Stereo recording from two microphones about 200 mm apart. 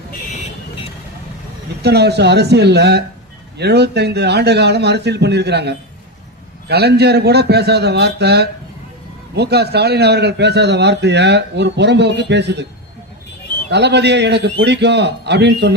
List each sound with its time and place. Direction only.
1.8 s a man's voice: 55° right (ahead or behind)
13.7 s a man's voice: 60° right (ahead or behind)